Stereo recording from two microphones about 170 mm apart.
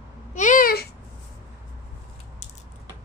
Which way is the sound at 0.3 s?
45° left (ahead or behind).